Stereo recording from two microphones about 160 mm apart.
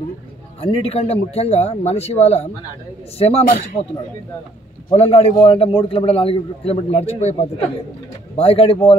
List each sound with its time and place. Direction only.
0.6 s a man's voice: 35° left (ahead or behind)
4.9 s a man's voice: 40° left (ahead or behind)